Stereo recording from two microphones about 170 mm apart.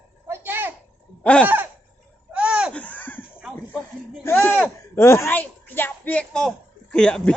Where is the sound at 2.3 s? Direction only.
5° right (ahead or behind).